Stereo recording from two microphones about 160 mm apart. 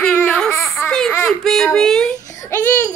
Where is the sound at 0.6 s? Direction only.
20° left (ahead or behind).